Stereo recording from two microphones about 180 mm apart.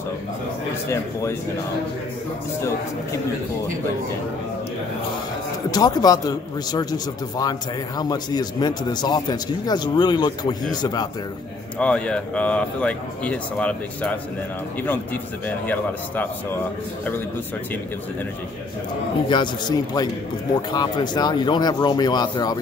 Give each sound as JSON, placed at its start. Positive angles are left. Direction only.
{"t": 5.7, "sound": "a man's voice", "side_deg": 20}
{"t": 11.8, "sound": "speech", "side_deg": 5}
{"t": 15.4, "sound": "speech", "side_deg": 10}
{"t": 19.2, "sound": "a man's voice", "side_deg": 25}